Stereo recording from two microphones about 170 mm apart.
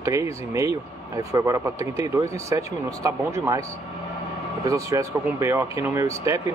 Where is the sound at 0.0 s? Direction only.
20° right (ahead or behind).